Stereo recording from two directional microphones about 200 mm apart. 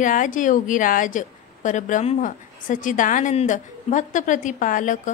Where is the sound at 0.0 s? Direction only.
40° left (ahead or behind).